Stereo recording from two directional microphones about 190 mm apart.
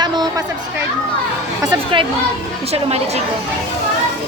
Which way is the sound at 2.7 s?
30° right (ahead or behind).